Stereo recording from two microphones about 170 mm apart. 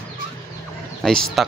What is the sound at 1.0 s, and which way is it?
Speech, centre (ahead or behind).